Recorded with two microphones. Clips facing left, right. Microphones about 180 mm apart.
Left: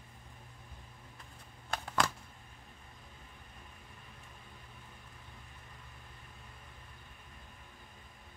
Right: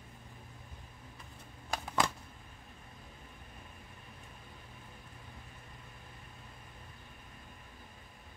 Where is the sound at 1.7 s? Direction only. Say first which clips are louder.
Right 1 dB; 10° right (ahead or behind).